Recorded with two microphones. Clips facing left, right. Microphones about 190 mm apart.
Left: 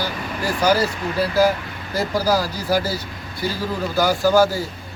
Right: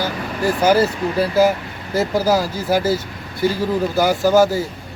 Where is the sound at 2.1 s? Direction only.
20° right (ahead or behind).